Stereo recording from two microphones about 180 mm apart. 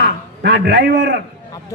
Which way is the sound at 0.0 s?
65° right (ahead or behind).